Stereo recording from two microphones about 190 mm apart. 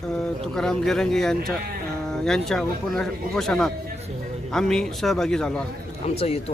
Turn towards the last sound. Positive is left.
turn(degrees=30)  # may be behind; listen again after turning